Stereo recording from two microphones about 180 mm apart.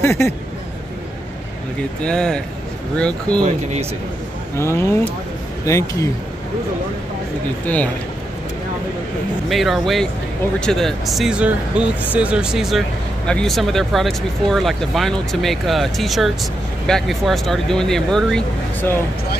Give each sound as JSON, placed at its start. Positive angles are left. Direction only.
{"t": 0.0, "sound": "speech", "side_deg": 15}
{"t": 2.0, "sound": "speech", "side_deg": 5}
{"t": 4.6, "sound": "speech", "side_deg": 15}
{"t": 7.6, "sound": "speech", "side_deg": 10}
{"t": 9.5, "sound": "speech", "side_deg": 0}